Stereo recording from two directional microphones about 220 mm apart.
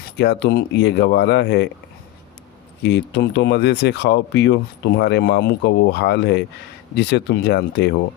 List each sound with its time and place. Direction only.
0.2 s speech: 50° left (ahead or behind)
2.8 s speech: 50° left (ahead or behind)